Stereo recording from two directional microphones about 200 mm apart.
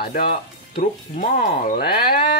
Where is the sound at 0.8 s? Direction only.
40° left (ahead or behind).